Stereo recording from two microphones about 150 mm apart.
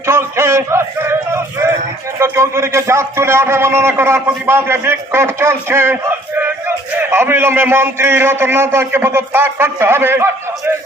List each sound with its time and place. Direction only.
0.0 s a man's voice: 15° right (ahead or behind)